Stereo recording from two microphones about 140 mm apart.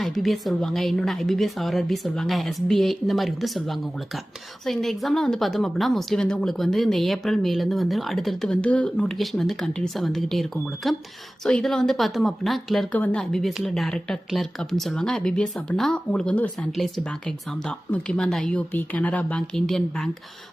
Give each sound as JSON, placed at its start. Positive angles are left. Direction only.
{"t": 0.0, "sound": "a woman's voice", "side_deg": 0}